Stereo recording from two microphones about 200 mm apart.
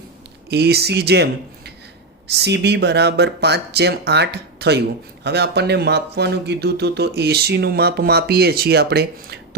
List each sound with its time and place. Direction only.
0.5 s speech: 55° right (ahead or behind)